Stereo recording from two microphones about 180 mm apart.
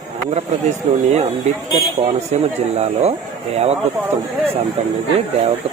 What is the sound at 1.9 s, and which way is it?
Speech, 35° right (ahead or behind).